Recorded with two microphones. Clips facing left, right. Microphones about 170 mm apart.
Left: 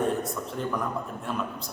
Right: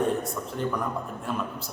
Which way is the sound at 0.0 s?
Centre (ahead or behind).